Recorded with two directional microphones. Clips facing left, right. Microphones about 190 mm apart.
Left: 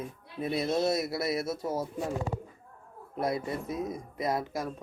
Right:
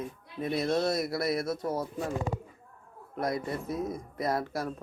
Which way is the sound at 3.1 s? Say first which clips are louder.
Left 1 dB; 25° left (ahead or behind).